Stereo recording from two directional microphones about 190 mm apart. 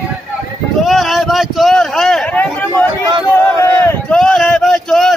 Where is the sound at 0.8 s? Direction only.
Centre (ahead or behind).